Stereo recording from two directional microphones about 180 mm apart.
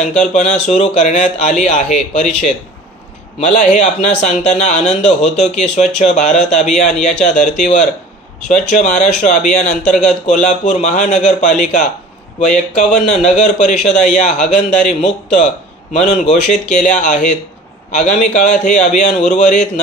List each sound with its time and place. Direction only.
0.2 s a man's voice: 40° left (ahead or behind)
15.9 s a man's voice: 40° left (ahead or behind)